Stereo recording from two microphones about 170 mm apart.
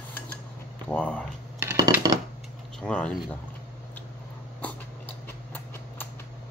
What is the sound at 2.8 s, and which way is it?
Speech, 5° left (ahead or behind).